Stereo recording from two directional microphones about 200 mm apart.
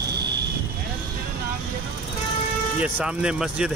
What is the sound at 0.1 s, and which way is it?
Vehicle, 55° right (ahead or behind).